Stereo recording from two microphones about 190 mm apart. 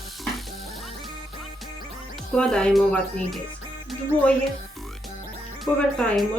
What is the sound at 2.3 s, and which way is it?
Speech, 5° left (ahead or behind).